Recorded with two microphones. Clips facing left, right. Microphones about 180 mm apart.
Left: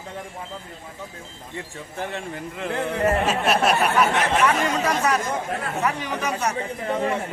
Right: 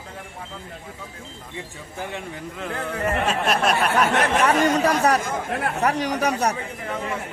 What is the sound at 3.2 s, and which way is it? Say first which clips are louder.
Speech: left 1 dB; 5° left (ahead or behind).